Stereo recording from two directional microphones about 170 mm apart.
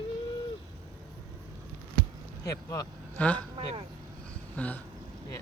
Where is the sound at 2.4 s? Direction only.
20° left (ahead or behind).